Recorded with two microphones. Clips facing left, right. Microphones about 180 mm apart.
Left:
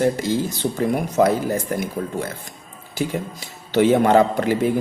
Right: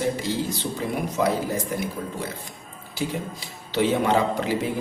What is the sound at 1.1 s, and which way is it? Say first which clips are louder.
Speech: left 6 dB; 45° left (ahead or behind).